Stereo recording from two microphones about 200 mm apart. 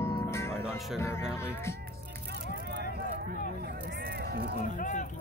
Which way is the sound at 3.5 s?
50° right (ahead or behind).